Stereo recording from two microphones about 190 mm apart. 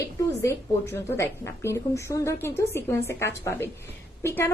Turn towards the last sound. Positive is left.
turn(degrees=10)  # may be behind; listen again after turning